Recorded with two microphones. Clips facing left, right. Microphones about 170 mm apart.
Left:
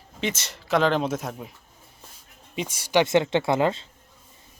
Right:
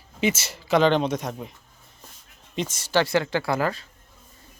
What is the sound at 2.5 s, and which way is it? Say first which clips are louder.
Speech: left 1 dB; 10° left (ahead or behind).